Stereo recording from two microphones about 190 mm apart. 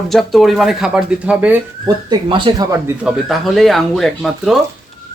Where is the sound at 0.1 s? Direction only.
Centre (ahead or behind).